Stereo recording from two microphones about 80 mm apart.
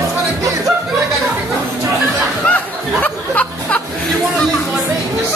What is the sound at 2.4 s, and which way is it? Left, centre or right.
Music, centre.